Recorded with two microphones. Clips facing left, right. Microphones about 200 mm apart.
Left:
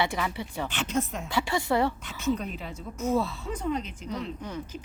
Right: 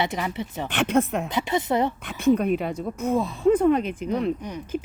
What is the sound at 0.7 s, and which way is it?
Speech, 60° right (ahead or behind).